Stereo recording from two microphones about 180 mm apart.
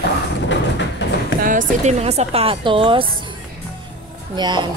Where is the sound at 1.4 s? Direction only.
45° right (ahead or behind); by 3.0 s 30° right (ahead or behind).